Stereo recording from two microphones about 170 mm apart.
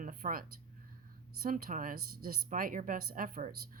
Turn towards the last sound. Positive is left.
turn(degrees=-50)  # may be behind; listen again after turning